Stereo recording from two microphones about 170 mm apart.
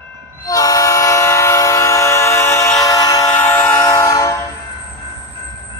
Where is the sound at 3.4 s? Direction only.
10° left (ahead or behind).